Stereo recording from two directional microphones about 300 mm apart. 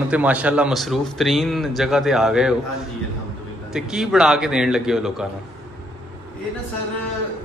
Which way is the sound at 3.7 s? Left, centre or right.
Centre.